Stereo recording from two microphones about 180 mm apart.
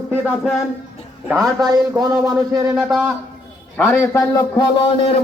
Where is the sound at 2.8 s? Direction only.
5° right (ahead or behind).